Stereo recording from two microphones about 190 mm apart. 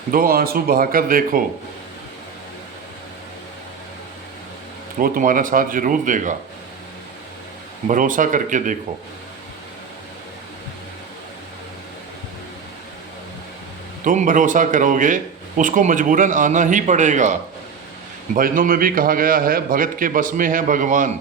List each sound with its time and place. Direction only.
0.1 s speech: 50° right (ahead or behind)
4.9 s speech: 45° right (ahead or behind)
7.9 s speech: 45° right (ahead or behind)
14.0 s speech: 45° right (ahead or behind)
18.3 s speech: 45° right (ahead or behind)